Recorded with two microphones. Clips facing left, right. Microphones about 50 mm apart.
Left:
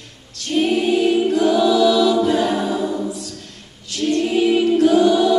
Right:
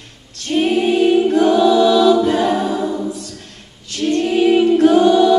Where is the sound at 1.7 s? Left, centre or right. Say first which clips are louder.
Right 3 dB; right; by 3.0 s centre.